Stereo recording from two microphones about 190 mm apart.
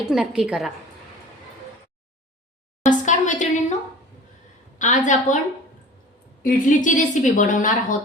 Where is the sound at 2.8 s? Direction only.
40° left (ahead or behind).